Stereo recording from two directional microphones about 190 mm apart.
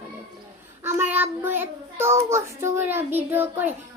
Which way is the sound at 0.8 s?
10° right (ahead or behind).